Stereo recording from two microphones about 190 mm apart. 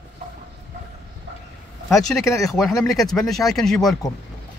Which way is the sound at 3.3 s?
Centre (ahead or behind).